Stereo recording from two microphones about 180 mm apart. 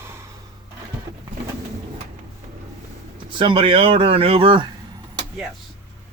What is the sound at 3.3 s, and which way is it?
Speech, 25° right (ahead or behind).